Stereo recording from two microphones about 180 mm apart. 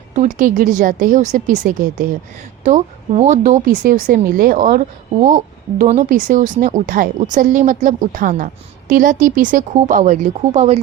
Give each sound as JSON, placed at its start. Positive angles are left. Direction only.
{"t": 0.1, "sound": "a woman's voice", "side_deg": -45}